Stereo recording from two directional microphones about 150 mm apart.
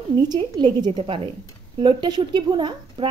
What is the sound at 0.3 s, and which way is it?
A woman's voice, 30° right (ahead or behind).